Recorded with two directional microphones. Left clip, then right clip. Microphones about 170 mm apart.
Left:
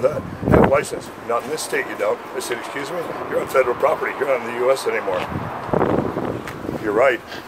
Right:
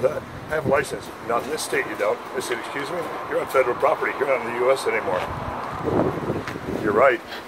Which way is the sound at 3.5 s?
10° left (ahead or behind).